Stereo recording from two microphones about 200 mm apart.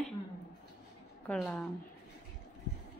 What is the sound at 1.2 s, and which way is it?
Speech, 5° left (ahead or behind).